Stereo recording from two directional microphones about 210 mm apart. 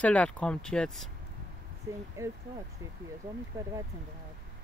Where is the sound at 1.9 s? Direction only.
15° right (ahead or behind).